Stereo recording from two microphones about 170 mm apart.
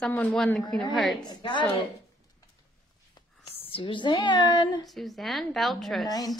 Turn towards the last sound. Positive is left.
turn(degrees=0)  # may be behind; listen again after turning